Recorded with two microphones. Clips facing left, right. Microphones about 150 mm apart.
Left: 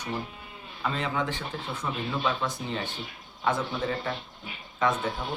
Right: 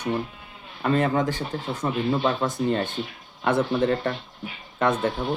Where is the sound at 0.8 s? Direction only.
55° right (ahead or behind).